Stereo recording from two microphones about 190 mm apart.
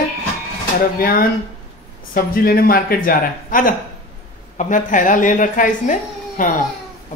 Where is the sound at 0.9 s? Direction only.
50° left (ahead or behind).